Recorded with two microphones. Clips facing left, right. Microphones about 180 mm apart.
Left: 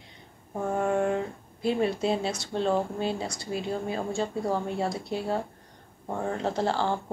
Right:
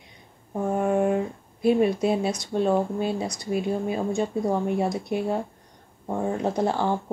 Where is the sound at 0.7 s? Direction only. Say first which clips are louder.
Right 3 dB; 15° right (ahead or behind).